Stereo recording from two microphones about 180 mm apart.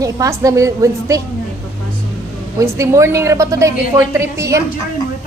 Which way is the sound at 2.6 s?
15° right (ahead or behind).